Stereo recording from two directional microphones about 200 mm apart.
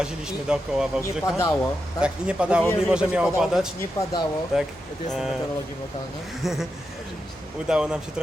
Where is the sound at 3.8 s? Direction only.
15° left (ahead or behind).